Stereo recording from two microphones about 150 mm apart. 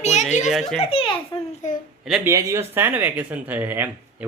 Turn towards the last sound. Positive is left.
turn(degrees=-10)  # may be behind; listen again after turning